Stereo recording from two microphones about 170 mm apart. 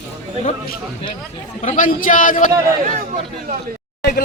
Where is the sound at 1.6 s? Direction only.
50° left (ahead or behind).